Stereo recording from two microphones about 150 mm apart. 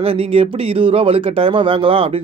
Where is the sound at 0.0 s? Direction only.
40° right (ahead or behind).